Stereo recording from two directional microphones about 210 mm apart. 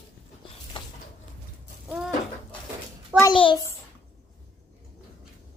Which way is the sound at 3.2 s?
25° left (ahead or behind).